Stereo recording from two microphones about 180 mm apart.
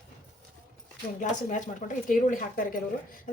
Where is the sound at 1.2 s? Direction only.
45° left (ahead or behind).